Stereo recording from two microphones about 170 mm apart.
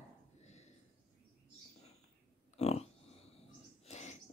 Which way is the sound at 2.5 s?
40° left (ahead or behind).